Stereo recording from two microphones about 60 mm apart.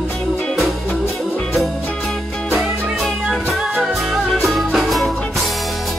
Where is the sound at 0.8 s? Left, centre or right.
Left.